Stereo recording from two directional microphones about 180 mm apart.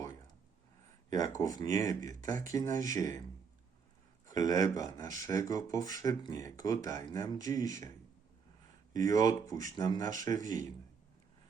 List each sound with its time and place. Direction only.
1.4 s speech: 20° left (ahead or behind)
4.3 s speech: 20° left (ahead or behind)
9.0 s speech: 20° left (ahead or behind)